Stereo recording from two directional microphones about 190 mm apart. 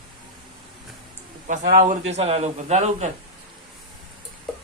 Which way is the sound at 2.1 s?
35° right (ahead or behind).